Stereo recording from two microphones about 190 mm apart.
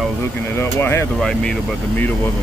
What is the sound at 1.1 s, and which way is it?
Speech, centre (ahead or behind).